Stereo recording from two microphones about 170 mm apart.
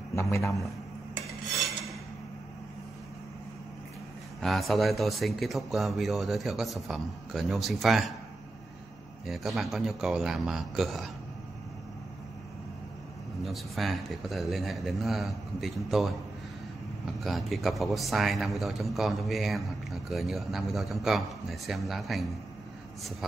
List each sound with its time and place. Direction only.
0.1 s a man's voice: 15° left (ahead or behind)
4.4 s a man's voice: centre (ahead or behind)
9.2 s a man's voice: centre (ahead or behind)
13.4 s a man's voice: centre (ahead or behind)